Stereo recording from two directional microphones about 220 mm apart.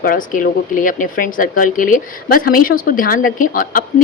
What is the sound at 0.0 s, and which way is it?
Speech, 40° left (ahead or behind).